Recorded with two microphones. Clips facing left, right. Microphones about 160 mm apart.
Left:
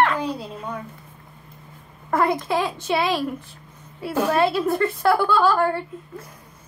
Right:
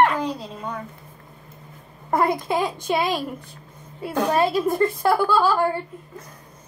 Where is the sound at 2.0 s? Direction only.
15° right (ahead or behind).